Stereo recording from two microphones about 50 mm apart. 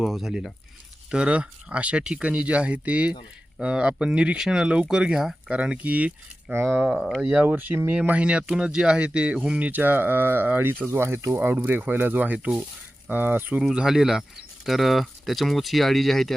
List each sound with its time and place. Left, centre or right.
0.0 s speech: centre
1.1 s speech: right
4.4 s speech: centre; by 6.1 s right
6.5 s speech: right
7.2 s speech: right
8.0 s speech: right
11.3 s speech: right
13.7 s speech: centre